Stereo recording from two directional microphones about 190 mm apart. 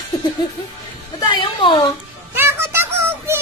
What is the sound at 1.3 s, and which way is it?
Speech, 25° left (ahead or behind).